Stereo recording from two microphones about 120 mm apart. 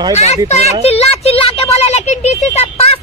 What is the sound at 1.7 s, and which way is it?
Speech, 65° left (ahead or behind).